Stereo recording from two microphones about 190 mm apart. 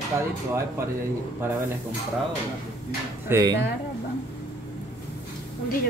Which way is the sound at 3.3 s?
20° right (ahead or behind).